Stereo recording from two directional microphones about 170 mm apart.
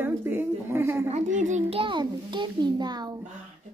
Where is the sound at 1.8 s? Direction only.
30° right (ahead or behind).